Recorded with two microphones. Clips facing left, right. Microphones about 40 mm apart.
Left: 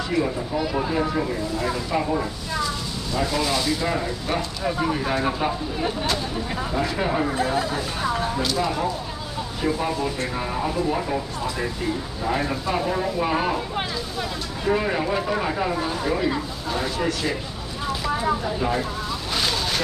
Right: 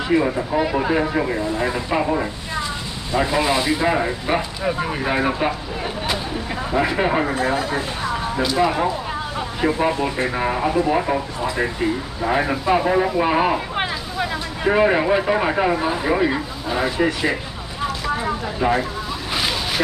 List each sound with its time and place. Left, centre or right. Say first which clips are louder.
0.1 s speech: right 6 dB; right
6.7 s speech: right 6 dB; right
8.5 s speech: right 5 dB; right
18.6 s speech: right 5 dB; right